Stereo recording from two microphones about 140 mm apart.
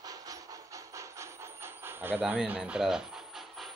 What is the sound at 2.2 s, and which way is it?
Speech, 10° right (ahead or behind).